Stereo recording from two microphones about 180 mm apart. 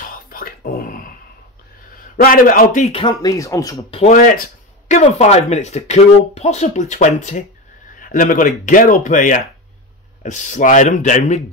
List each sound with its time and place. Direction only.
0.0 s a sound: 50° left (ahead or behind)
2.2 s speech: 55° left (ahead or behind)
2.9 s speech: 25° left (ahead or behind)
3.7 s speech: 30° left (ahead or behind)
4.1 s speech: 50° left (ahead or behind)